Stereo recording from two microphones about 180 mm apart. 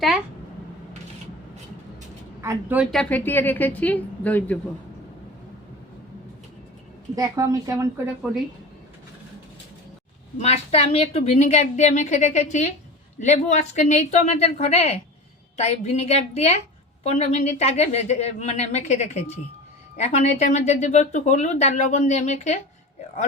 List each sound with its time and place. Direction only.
2.4 s a woman's voice: 15° right (ahead or behind)
2.9 s a woman's voice: 5° left (ahead or behind)
7.2 s a woman's voice: 20° right (ahead or behind)
10.3 s speech: 35° left (ahead or behind)